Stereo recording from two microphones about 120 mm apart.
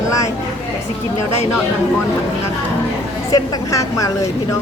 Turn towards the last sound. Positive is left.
turn(degrees=25)  # may be behind; listen again after turning